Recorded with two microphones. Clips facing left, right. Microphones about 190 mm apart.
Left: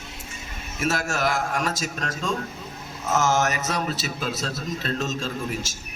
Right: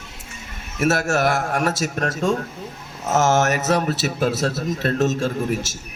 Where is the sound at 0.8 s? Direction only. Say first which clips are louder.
Right 6 dB; 60° right (ahead or behind).